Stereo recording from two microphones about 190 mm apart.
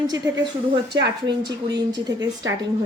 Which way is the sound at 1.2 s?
20° right (ahead or behind).